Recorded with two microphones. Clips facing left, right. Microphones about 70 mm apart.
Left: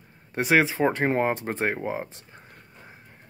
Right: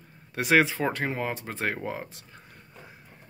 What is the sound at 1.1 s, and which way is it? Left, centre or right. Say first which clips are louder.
Speech: left 7 dB; left.